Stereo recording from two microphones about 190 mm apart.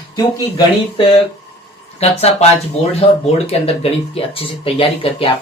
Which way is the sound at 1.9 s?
35° left (ahead or behind).